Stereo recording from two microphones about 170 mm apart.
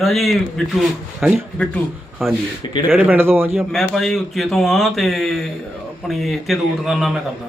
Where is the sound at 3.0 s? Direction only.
10° right (ahead or behind).